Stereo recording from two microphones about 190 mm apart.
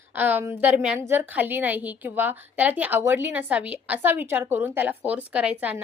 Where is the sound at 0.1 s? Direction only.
10° right (ahead or behind).